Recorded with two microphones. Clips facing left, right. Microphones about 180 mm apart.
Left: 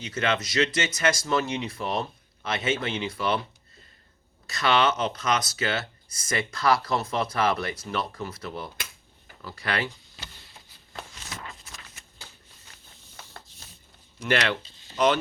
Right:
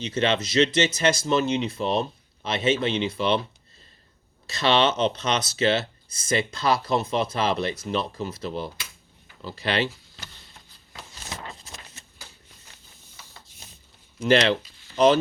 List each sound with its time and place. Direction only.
0.0 s speech: 25° right (ahead or behind)
4.4 s speech: 25° right (ahead or behind)
11.4 s a sound: 30° right (ahead or behind)
14.2 s speech: 25° right (ahead or behind)
14.6 s a sound: 20° left (ahead or behind)
14.9 s speech: 25° right (ahead or behind)